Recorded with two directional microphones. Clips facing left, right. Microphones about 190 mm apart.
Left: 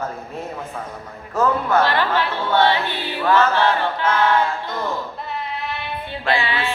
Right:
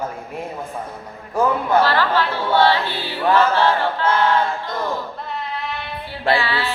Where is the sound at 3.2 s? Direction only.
15° right (ahead or behind).